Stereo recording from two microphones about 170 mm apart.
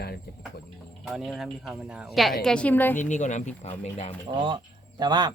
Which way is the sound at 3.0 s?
45° left (ahead or behind).